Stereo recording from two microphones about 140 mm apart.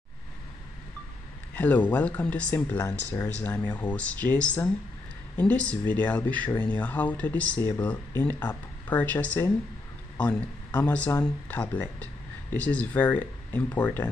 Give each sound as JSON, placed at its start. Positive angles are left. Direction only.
{"t": 1.5, "sound": "speech", "side_deg": 10}